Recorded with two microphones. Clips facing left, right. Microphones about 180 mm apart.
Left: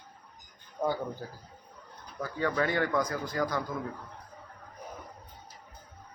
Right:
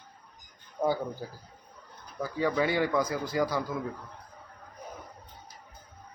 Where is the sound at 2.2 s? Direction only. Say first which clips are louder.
Right 2 dB; 10° right (ahead or behind).